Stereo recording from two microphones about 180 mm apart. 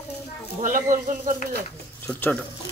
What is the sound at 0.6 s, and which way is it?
Speech, 45° right (ahead or behind).